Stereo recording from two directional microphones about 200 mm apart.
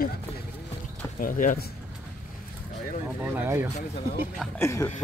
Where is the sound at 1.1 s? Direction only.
45° left (ahead or behind).